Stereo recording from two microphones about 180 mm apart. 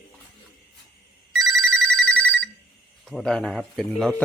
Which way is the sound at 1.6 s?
5° left (ahead or behind).